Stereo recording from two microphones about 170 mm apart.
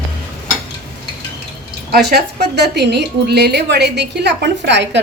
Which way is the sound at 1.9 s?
75° right (ahead or behind).